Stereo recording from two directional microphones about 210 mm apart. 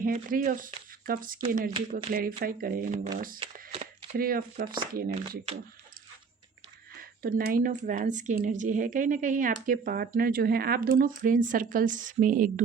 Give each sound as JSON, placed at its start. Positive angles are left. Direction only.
{"t": 0.0, "sound": "speech", "side_deg": -40}
{"t": 1.7, "sound": "speech", "side_deg": -25}
{"t": 2.1, "sound": "speech", "side_deg": -45}
{"t": 3.4, "sound": "a sound", "side_deg": -25}
{"t": 4.1, "sound": "speech", "side_deg": -45}
{"t": 6.9, "sound": "speech", "side_deg": -45}